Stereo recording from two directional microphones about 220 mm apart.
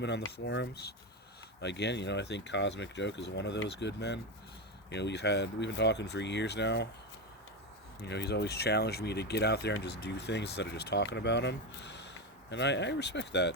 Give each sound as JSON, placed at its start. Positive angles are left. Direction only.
{"t": 0.0, "sound": "speech", "side_deg": 50}
{"t": 8.0, "sound": "speech", "side_deg": 50}